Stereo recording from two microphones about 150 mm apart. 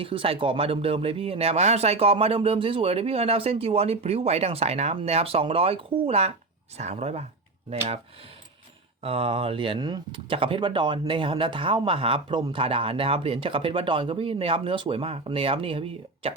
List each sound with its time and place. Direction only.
0.0 s speech: 35° right (ahead or behind)
9.0 s speech: 40° right (ahead or behind)